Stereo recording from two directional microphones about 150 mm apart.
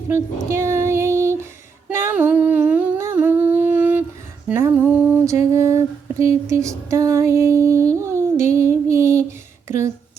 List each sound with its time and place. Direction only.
0.1 s child singing: 20° right (ahead or behind)
1.9 s humming: 15° right (ahead or behind)
4.4 s a sound: 15° right (ahead or behind)
7.9 s music: 20° right (ahead or behind)
9.6 s speech: 20° right (ahead or behind)